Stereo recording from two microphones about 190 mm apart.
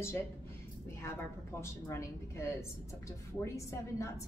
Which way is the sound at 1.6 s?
15° left (ahead or behind).